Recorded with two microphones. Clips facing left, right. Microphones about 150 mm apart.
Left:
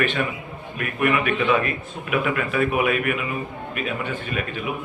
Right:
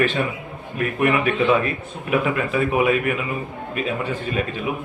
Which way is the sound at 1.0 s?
30° right (ahead or behind).